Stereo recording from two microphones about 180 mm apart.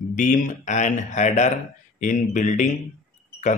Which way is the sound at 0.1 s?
45° left (ahead or behind).